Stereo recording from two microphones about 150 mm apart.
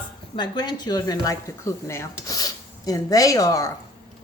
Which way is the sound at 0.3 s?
30° left (ahead or behind).